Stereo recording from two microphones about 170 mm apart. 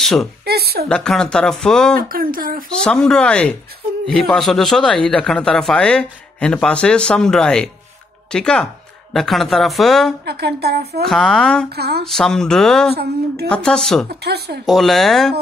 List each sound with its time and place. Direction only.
0.0 s a woman's voice: centre (ahead or behind)
0.5 s a woman's voice: 70° right (ahead or behind)
0.8 s a man's voice: 5° left (ahead or behind)
2.0 s speech: 60° right (ahead or behind)
2.8 s a man's voice: 5° left (ahead or behind)
10.2 s speech: 70° right (ahead or behind)
11.1 s a man's voice: centre (ahead or behind)
11.7 s speech: 70° right (ahead or behind)
12.1 s a man's voice: 5° left (ahead or behind)
12.9 s speech: 70° right (ahead or behind)
13.5 s a man's voice: 5° left (ahead or behind)
14.0 s speech: 70° right (ahead or behind)
14.7 s a man's voice: centre (ahead or behind)